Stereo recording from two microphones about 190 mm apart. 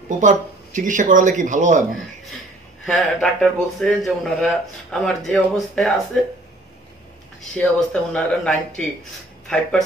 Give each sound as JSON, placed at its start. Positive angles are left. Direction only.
{"t": 0.7, "sound": "speech", "side_deg": -40}
{"t": 2.9, "sound": "a man's voice", "side_deg": 0}
{"t": 7.5, "sound": "a man's voice", "side_deg": 5}